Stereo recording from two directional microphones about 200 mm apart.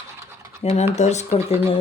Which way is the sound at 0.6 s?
30° left (ahead or behind).